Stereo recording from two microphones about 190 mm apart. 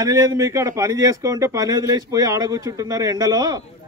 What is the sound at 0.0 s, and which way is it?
Speech, 15° right (ahead or behind).